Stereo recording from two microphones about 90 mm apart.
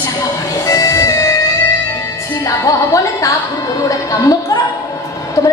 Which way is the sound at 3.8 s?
40° left (ahead or behind).